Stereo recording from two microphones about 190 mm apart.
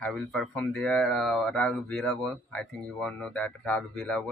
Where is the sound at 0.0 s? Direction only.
5° left (ahead or behind).